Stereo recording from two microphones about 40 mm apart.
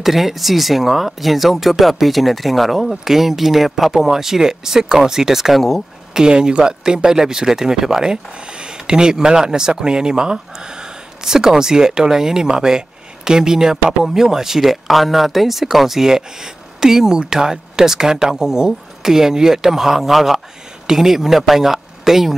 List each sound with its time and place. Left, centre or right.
0.0 s speech: centre
6.1 s speech: centre